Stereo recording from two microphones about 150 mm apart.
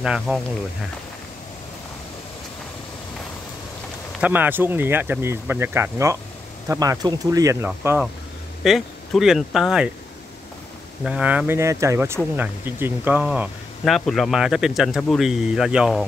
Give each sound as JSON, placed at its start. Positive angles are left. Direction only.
{"t": 0.0, "sound": "speech", "side_deg": -5}
{"t": 4.2, "sound": "speech", "side_deg": -10}
{"t": 8.6, "sound": "speech", "side_deg": 0}
{"t": 11.1, "sound": "speech", "side_deg": -10}